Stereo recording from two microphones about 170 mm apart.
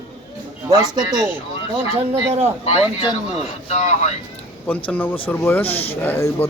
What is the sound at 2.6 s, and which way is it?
A man's voice, 35° left (ahead or behind).